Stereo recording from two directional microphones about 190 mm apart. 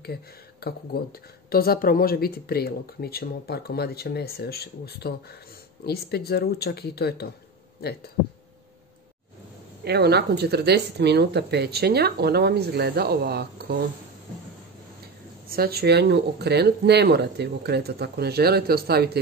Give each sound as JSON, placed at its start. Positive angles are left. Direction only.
{"t": 0.0, "sound": "speech", "side_deg": 55}
{"t": 9.8, "sound": "speech", "side_deg": -60}
{"t": 15.4, "sound": "speech", "side_deg": -50}